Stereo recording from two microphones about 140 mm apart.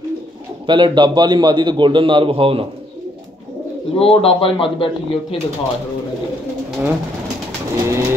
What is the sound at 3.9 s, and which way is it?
Speech, 45° left (ahead or behind).